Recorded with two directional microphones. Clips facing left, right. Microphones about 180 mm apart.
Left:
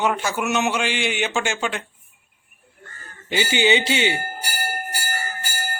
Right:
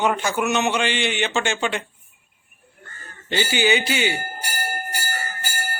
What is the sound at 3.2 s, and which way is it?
Speech, 15° left (ahead or behind).